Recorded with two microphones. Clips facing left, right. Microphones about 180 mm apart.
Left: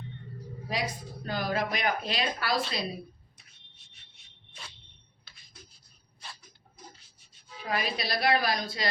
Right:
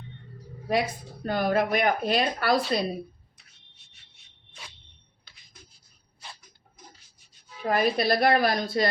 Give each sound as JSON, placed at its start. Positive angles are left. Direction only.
{"t": 0.7, "sound": "speech", "side_deg": -55}
{"t": 7.6, "sound": "speech", "side_deg": -50}